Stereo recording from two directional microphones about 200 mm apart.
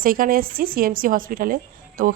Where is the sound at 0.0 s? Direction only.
45° right (ahead or behind).